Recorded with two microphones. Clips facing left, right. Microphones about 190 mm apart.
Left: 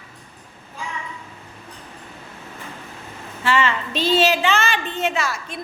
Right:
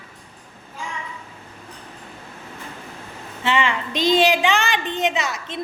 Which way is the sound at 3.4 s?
15° right (ahead or behind).